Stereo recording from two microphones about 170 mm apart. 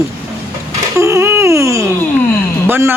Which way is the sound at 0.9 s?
15° right (ahead or behind).